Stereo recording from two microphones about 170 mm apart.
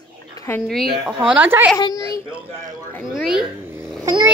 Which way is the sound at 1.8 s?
25° left (ahead or behind).